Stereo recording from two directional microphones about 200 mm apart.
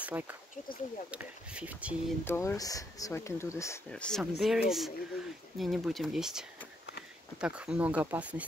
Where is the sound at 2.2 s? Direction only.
15° left (ahead or behind).